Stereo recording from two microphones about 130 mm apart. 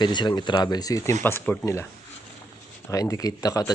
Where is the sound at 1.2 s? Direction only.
15° left (ahead or behind).